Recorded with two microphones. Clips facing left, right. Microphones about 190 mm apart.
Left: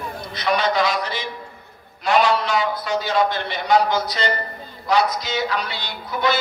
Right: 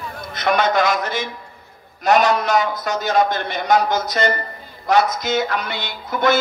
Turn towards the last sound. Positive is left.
turn(degrees=-50)  # may be behind; listen again after turning